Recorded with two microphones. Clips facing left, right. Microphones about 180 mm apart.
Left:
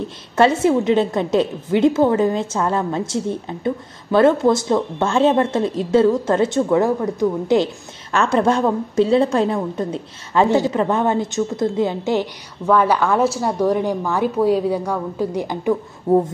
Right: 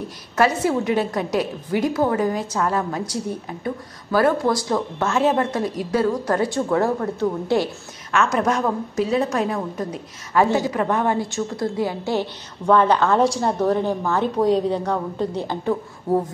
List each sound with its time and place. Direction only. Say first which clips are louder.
0.4 s a woman's voice: left 4 dB; 25° left (ahead or behind)
8.1 s a woman's voice: left 3 dB; 30° left (ahead or behind)
12.7 s a woman's voice: even; 10° left (ahead or behind)